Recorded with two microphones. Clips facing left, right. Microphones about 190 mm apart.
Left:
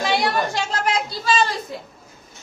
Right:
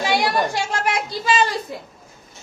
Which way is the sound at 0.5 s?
15° right (ahead or behind).